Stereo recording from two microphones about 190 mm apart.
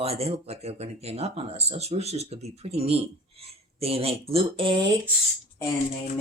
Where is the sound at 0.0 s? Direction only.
30° right (ahead or behind).